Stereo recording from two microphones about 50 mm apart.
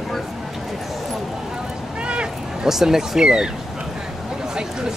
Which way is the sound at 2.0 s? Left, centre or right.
Right.